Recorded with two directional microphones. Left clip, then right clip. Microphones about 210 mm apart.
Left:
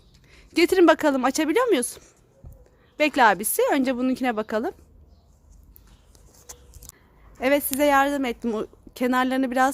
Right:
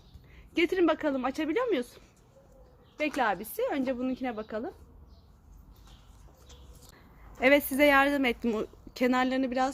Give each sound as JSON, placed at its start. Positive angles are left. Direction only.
{"t": 0.3, "sound": "speech", "side_deg": 35}
{"t": 3.2, "sound": "a woman's voice", "side_deg": 50}
{"t": 7.3, "sound": "a woman's voice", "side_deg": 15}